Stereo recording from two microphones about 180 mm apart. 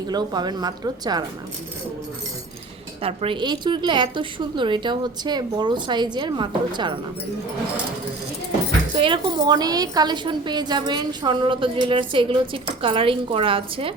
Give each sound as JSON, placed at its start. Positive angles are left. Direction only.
{"t": 0.1, "sound": "a woman's voice", "side_deg": -25}
{"t": 3.0, "sound": "a woman's voice", "side_deg": -35}
{"t": 9.0, "sound": "a woman's voice", "side_deg": -30}